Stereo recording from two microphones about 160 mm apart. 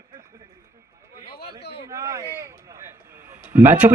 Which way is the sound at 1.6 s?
90° left.